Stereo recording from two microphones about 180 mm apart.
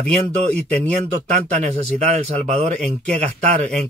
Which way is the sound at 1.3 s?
40° right (ahead or behind).